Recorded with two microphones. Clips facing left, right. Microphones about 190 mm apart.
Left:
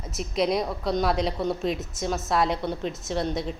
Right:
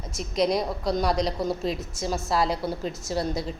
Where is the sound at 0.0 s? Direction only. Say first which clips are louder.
Right 1 dB; centre (ahead or behind).